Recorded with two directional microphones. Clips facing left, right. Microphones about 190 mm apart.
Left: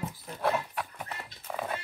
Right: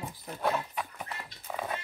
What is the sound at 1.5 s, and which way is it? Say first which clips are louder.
Music: left 1 dB; 5° right (ahead or behind).